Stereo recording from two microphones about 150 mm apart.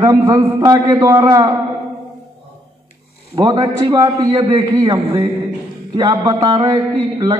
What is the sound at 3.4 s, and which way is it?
A man's voice, 30° right (ahead or behind).